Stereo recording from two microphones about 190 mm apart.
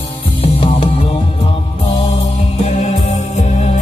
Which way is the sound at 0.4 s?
30° left (ahead or behind).